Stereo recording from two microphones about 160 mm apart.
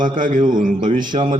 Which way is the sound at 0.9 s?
30° right (ahead or behind).